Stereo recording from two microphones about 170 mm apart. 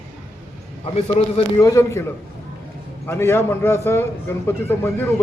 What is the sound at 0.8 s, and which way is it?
Speech, 35° left (ahead or behind).